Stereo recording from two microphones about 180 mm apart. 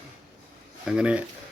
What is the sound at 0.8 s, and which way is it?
Speech, 5° right (ahead or behind).